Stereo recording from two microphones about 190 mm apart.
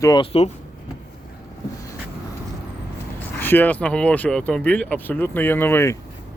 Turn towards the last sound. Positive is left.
turn(degrees=10)  # may be behind; listen again after turning